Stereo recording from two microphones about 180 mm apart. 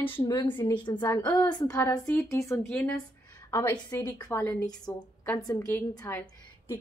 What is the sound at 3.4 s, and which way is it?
A woman's voice, 15° left (ahead or behind).